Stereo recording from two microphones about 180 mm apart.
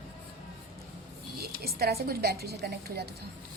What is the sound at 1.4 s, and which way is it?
A woman's voice, 60° right (ahead or behind).